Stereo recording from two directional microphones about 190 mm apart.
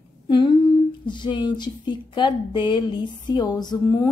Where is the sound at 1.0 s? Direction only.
25° left (ahead or behind).